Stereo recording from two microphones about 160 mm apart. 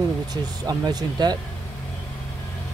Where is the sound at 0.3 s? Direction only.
25° right (ahead or behind).